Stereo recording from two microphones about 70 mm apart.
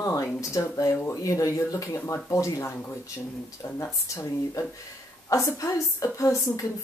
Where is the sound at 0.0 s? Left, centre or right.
Left.